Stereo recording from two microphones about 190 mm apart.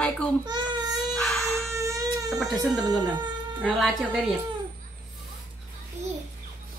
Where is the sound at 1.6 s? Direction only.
15° right (ahead or behind).